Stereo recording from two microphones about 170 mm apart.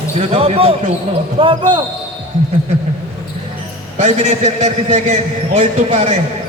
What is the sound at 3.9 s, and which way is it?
A man's voice, 40° right (ahead or behind).